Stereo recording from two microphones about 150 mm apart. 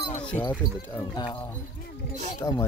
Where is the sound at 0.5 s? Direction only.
10° left (ahead or behind).